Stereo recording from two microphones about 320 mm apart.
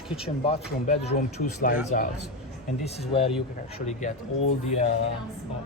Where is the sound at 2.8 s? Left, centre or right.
Centre.